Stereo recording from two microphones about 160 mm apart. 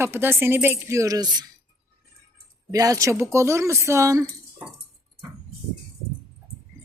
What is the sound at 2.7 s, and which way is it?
Speech, 20° right (ahead or behind).